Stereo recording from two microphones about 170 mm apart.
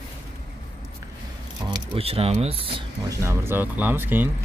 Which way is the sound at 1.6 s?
30° right (ahead or behind).